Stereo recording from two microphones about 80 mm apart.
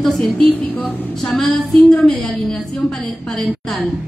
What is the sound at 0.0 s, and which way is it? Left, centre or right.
Speech, centre.